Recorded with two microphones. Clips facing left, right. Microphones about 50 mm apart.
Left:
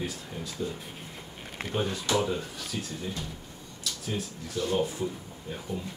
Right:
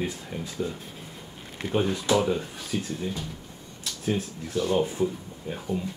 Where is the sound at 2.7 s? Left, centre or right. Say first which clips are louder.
Right 6 dB; right.